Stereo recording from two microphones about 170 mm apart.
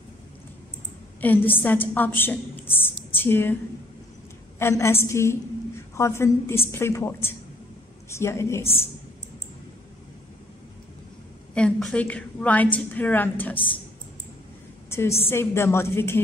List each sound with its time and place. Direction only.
1.2 s a woman's voice: 10° left (ahead or behind)
4.6 s a woman's voice: 15° left (ahead or behind)
11.5 s a woman's voice: 5° left (ahead or behind)
14.9 s a sound: 15° left (ahead or behind)
15.2 s a woman's voice: 15° left (ahead or behind)